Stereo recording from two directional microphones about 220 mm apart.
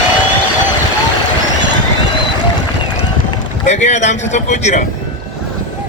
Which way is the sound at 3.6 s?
30° left (ahead or behind).